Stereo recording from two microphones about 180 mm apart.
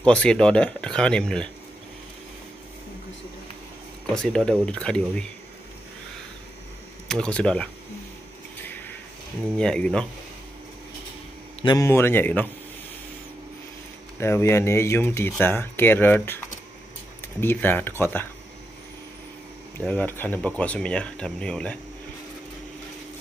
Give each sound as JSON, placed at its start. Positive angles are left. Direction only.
{"t": 0.0, "sound": "speech", "side_deg": 5}
{"t": 4.1, "sound": "speech", "side_deg": 5}
{"t": 7.1, "sound": "speech", "side_deg": 5}
{"t": 8.6, "sound": "a sound", "side_deg": 10}
{"t": 9.6, "sound": "speech", "side_deg": 5}
{"t": 11.6, "sound": "speech", "side_deg": 20}
{"t": 14.2, "sound": "speech", "side_deg": 15}
{"t": 17.4, "sound": "speech", "side_deg": 10}
{"t": 19.8, "sound": "speech", "side_deg": 10}